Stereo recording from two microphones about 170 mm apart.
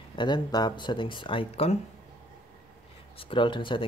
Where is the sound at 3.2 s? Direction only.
30° left (ahead or behind).